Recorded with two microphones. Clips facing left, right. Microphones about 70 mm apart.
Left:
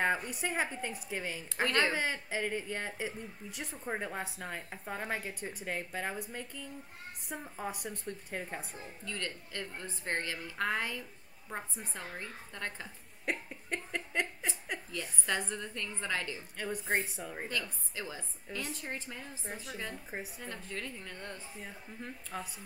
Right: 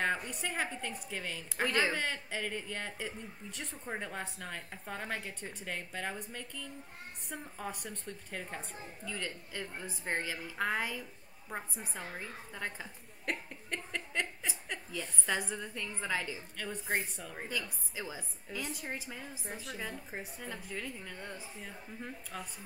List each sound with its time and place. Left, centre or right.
0.0 s a woman's voice: centre
1.7 s a woman's voice: centre
2.0 s a woman's voice: centre
9.0 s a woman's voice: centre
13.2 s cough: centre
14.9 s a woman's voice: centre
16.5 s a woman's voice: centre
17.5 s a woman's voice: centre
20.4 s a woman's voice: centre
22.3 s a woman's voice: centre